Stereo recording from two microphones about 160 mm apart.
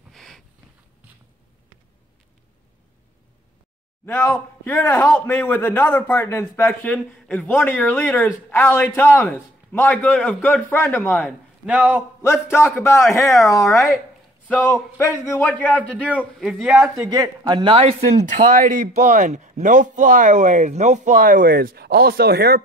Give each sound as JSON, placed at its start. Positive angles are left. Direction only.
{"t": 0.1, "sound": "a sound", "side_deg": 5}
{"t": 4.0, "sound": "a man's voice", "side_deg": 10}
{"t": 11.6, "sound": "speech", "side_deg": -10}
{"t": 12.2, "sound": "a man's voice", "side_deg": 15}
{"t": 16.5, "sound": "speech", "side_deg": -5}
{"t": 16.9, "sound": "speech", "side_deg": -20}